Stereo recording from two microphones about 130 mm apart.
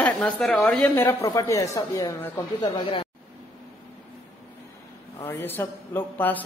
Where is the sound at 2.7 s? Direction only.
45° left (ahead or behind).